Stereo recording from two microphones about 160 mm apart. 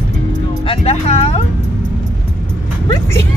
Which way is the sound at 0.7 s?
40° left (ahead or behind).